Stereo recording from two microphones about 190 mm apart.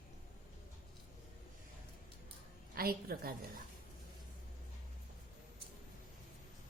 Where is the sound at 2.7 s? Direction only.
50° right (ahead or behind).